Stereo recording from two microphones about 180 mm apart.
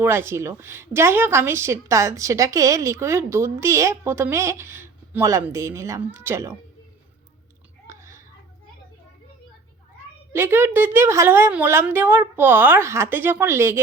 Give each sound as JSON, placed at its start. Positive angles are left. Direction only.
{"t": 0.0, "sound": "a woman's voice", "side_deg": -15}
{"t": 7.9, "sound": "chewing", "side_deg": -15}
{"t": 10.3, "sound": "a woman's voice", "side_deg": -10}